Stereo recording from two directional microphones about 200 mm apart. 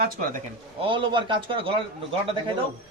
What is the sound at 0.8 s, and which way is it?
Speech, 25° right (ahead or behind).